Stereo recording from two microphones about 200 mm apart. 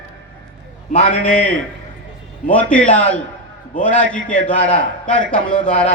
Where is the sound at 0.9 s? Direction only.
35° left (ahead or behind).